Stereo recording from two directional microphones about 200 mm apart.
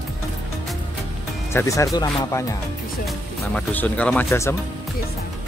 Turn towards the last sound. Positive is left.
turn(degrees=15)  # may be behind; listen again after turning